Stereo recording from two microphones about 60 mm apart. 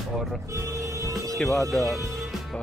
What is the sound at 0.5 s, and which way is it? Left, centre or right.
Music, right.